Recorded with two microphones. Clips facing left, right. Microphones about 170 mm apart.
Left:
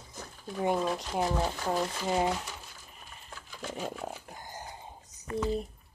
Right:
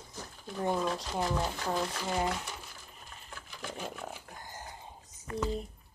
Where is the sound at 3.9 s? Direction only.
20° left (ahead or behind).